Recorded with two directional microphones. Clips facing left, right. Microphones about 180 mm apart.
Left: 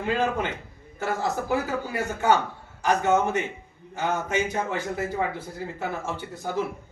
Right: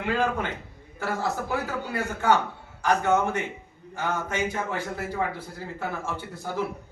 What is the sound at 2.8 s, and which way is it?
Speech, 20° left (ahead or behind).